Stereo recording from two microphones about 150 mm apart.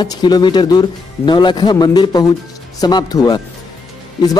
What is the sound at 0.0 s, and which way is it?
Speech, 30° left (ahead or behind).